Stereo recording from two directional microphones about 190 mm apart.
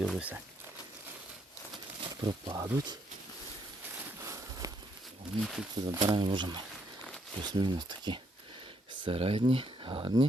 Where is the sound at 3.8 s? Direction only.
10° right (ahead or behind).